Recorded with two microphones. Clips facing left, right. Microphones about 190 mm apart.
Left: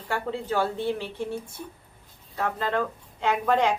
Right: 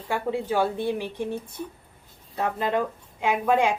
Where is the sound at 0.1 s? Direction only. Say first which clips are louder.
Right 2 dB; 15° right (ahead or behind).